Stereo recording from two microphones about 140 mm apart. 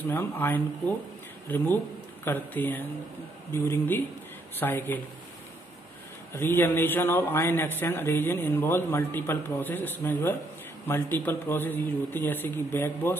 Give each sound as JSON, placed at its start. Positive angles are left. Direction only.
{"t": 0.0, "sound": "a man's voice", "side_deg": 15}
{"t": 6.3, "sound": "a man's voice", "side_deg": 15}